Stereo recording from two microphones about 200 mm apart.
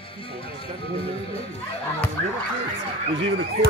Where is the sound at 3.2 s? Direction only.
60° right (ahead or behind).